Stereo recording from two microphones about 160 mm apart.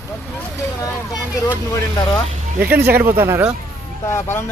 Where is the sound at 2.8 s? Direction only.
15° right (ahead or behind).